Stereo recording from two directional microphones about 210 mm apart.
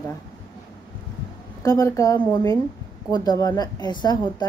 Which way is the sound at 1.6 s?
15° left (ahead or behind).